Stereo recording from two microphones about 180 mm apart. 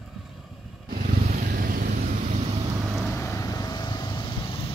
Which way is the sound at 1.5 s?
55° right (ahead or behind).